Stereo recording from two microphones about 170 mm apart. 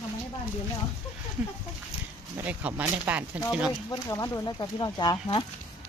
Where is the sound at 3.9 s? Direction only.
20° left (ahead or behind).